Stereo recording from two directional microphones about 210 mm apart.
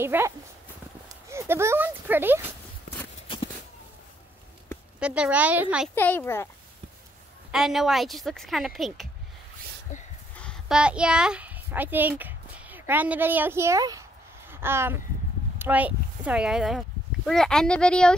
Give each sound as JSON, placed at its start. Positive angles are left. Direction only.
{"t": 0.0, "sound": "a woman's voice", "side_deg": -10}
{"t": 5.0, "sound": "a woman's voice", "side_deg": -5}
{"t": 5.9, "sound": "a child's voice", "side_deg": 10}
{"t": 7.5, "sound": "a woman's voice", "side_deg": 0}
{"t": 10.3, "sound": "a child's voice", "side_deg": 5}